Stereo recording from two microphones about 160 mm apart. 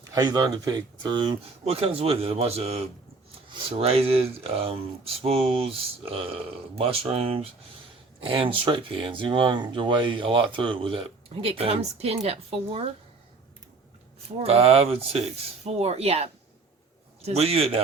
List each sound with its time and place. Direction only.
0.1 s speech: 25° right (ahead or behind)
14.3 s speech: 40° right (ahead or behind)